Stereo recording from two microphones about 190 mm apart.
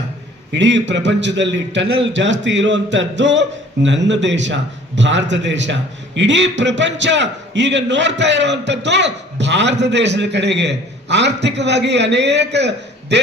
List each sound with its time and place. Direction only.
0.5 s a man's voice: 70° right (ahead or behind)